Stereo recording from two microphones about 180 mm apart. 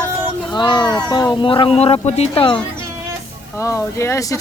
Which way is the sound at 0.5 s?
25° left (ahead or behind).